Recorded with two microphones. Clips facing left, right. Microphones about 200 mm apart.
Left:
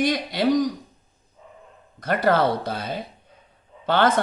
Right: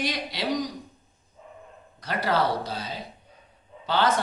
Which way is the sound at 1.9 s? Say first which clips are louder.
Left 5 dB; 50° left (ahead or behind).